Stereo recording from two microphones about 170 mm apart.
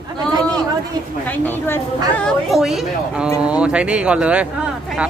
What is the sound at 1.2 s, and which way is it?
A woman's voice, 10° left (ahead or behind).